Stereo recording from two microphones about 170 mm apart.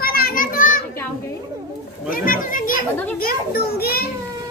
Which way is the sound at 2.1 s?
55° left (ahead or behind).